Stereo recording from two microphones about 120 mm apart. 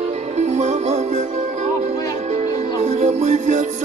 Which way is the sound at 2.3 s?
70° right (ahead or behind).